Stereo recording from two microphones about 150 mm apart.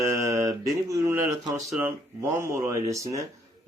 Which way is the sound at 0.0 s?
20° right (ahead or behind).